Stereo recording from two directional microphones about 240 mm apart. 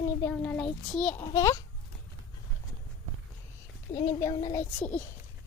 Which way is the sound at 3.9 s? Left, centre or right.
Centre.